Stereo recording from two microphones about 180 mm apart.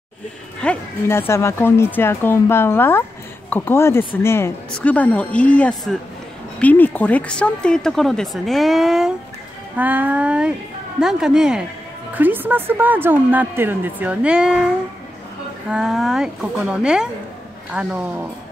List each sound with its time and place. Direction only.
0.6 s a woman's voice: 10° left (ahead or behind)
15.7 s a woman's voice: centre (ahead or behind)